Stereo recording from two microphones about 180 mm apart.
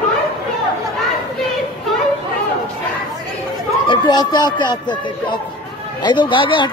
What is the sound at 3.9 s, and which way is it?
Speech, 25° left (ahead or behind).